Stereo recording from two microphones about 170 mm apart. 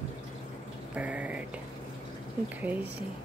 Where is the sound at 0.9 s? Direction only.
10° right (ahead or behind).